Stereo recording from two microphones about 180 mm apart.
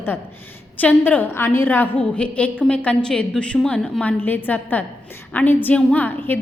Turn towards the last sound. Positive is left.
turn(degrees=10)  # may be behind; listen again after turning